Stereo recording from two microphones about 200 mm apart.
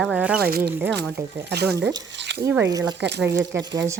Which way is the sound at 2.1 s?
60° right (ahead or behind).